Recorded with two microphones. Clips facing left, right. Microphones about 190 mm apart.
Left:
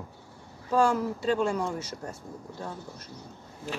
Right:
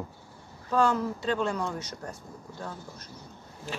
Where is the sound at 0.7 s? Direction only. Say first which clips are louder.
Left 1 dB; 10° left (ahead or behind).